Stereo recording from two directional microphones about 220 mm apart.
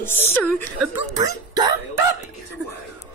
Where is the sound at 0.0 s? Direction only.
10° left (ahead or behind).